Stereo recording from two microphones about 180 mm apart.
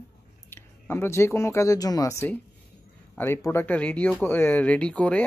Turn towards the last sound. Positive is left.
turn(degrees=5)  # may be behind; listen again after turning